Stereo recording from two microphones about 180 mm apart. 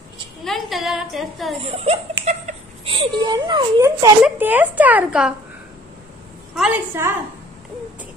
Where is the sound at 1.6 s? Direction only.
35° right (ahead or behind).